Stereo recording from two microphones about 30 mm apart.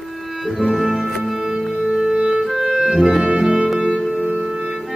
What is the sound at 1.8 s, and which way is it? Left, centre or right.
Music, right.